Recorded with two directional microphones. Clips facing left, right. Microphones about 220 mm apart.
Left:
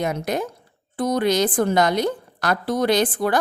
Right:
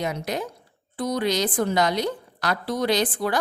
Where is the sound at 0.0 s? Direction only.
50° left (ahead or behind).